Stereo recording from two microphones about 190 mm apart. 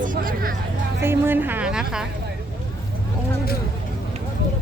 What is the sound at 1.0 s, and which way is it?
A woman's voice, 10° right (ahead or behind).